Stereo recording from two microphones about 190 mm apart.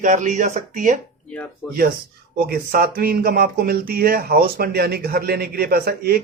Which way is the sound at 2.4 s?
55° right (ahead or behind).